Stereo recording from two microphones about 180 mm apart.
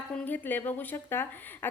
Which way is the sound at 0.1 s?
10° left (ahead or behind).